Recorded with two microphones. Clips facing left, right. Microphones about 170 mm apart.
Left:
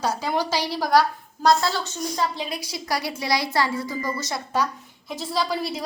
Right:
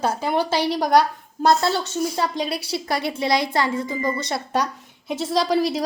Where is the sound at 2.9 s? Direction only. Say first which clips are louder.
Right 3 dB; 25° right (ahead or behind).